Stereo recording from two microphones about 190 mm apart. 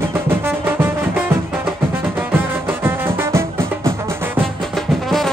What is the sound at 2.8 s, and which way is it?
Music, 10° right (ahead or behind).